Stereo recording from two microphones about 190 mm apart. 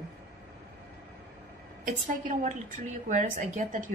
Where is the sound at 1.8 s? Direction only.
45° right (ahead or behind).